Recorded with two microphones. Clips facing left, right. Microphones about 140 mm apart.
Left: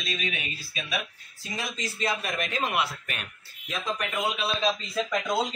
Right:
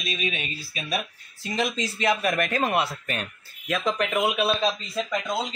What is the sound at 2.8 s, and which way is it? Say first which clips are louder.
Speech: right 3 dB; 30° right (ahead or behind).